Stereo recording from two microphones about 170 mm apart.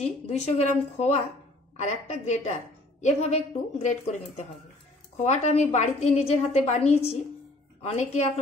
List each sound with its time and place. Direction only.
0.0 s a woman's voice: 40° left (ahead or behind)
5.2 s a woman's voice: 45° left (ahead or behind)